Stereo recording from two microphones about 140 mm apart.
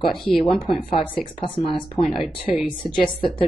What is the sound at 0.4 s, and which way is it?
Speech, 40° left (ahead or behind).